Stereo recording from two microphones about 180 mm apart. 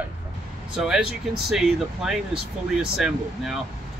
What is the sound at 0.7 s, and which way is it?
Speech, 5° right (ahead or behind).